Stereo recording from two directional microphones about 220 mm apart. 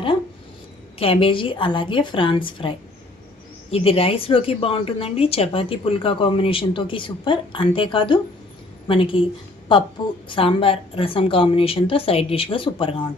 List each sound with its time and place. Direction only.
0.9 s a woman's voice: 25° left (ahead or behind)
3.7 s a woman's voice: 25° left (ahead or behind)